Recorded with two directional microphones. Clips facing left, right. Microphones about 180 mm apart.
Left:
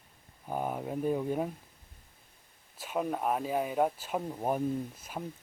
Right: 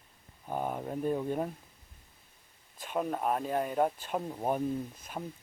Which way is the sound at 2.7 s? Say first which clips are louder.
Even; 5° left (ahead or behind).